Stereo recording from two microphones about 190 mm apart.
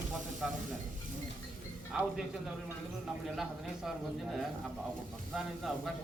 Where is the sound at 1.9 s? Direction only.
5° right (ahead or behind).